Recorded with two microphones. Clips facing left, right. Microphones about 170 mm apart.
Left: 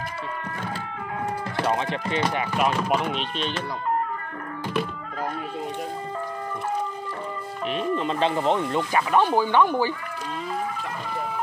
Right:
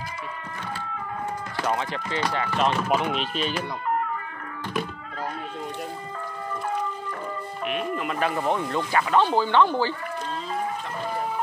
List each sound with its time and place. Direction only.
1.6 s speech: 20° left (ahead or behind); by 3.6 s 5° right (ahead or behind)
7.9 s speech: 30° left (ahead or behind)